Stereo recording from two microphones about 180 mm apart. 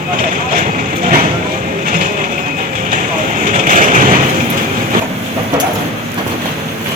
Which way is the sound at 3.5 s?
45° right (ahead or behind).